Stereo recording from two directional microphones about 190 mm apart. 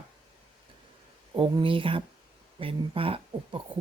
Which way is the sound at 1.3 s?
25° right (ahead or behind).